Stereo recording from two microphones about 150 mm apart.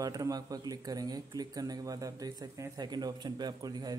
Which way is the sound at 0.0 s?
25° right (ahead or behind).